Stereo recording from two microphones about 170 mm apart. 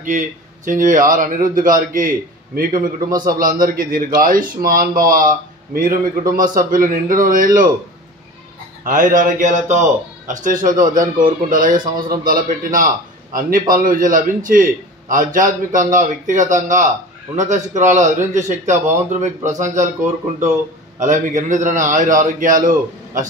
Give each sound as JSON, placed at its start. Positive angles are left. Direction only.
{"t": 0.0, "sound": "a man's voice", "side_deg": -50}
{"t": 8.8, "sound": "a man's voice", "side_deg": -50}
{"t": 21.0, "sound": "a man's voice", "side_deg": -45}